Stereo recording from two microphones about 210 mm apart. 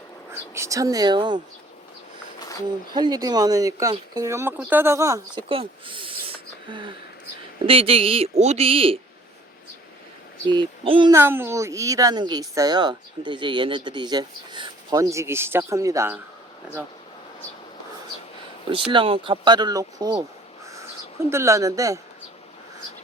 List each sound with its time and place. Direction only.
0.5 s a woman's voice: 15° right (ahead or behind)
2.9 s a woman's voice: 20° right (ahead or behind)
10.4 s speech: 20° right (ahead or behind)
11.1 s a woman's voice: 10° right (ahead or behind)
18.7 s speech: 25° right (ahead or behind)
21.2 s a woman's voice: 15° right (ahead or behind)